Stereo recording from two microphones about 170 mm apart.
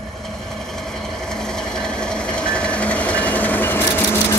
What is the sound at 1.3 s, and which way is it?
Train, 5° left (ahead or behind).